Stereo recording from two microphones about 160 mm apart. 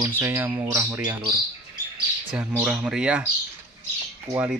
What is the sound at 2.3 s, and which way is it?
Speech, 5° right (ahead or behind).